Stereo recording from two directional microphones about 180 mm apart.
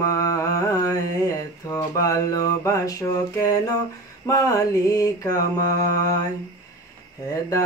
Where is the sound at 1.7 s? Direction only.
15° left (ahead or behind).